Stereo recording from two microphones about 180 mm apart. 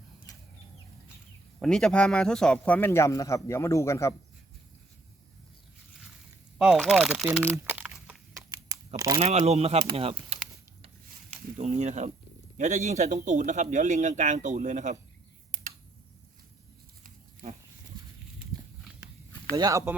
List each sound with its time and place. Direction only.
1.5 s a man's voice: centre (ahead or behind)
6.6 s speech: 5° right (ahead or behind)
9.0 s speech: 20° right (ahead or behind)
9.2 s a man's voice: 35° right (ahead or behind)
11.5 s a man's voice: 40° right (ahead or behind)
15.5 s computer keyboard: 45° right (ahead or behind)
19.5 s speech: 20° right (ahead or behind)